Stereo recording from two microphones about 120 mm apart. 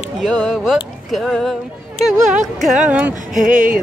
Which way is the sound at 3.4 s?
90° right.